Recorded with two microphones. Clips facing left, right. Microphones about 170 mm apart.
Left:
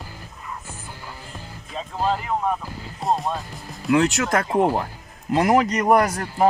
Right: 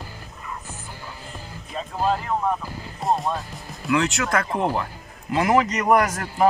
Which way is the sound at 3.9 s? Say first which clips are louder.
Left 3 dB; 45° left (ahead or behind).